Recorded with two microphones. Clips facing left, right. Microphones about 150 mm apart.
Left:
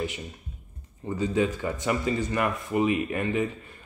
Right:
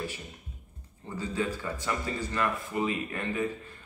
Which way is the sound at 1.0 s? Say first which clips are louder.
Left 7 dB; 15° left (ahead or behind).